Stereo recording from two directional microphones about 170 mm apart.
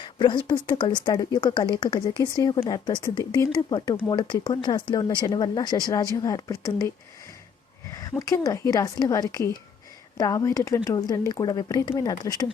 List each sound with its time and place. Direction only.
0.0 s speech: 30° left (ahead or behind)
7.9 s speech: 20° left (ahead or behind)